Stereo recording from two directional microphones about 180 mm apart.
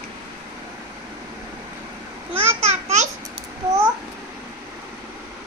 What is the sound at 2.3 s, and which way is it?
Babbling, 35° right (ahead or behind).